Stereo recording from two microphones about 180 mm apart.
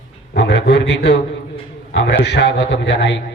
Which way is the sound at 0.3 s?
75° left (ahead or behind).